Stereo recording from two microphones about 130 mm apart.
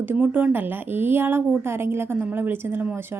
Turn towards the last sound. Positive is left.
turn(degrees=-15)  # may be behind; listen again after turning